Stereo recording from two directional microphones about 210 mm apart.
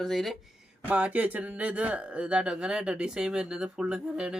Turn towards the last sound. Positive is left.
turn(degrees=-5)  # may be behind; listen again after turning